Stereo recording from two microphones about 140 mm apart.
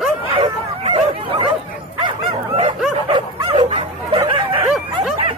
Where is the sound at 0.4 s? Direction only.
40° right (ahead or behind).